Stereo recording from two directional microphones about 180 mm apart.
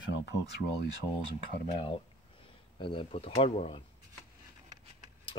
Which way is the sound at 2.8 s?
30° left (ahead or behind).